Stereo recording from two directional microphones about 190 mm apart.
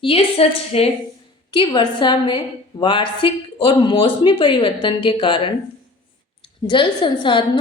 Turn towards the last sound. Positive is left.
turn(degrees=25)  # may be behind; listen again after turning